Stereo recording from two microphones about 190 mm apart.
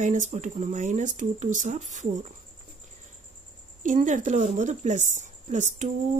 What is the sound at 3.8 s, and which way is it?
Speech, 40° right (ahead or behind).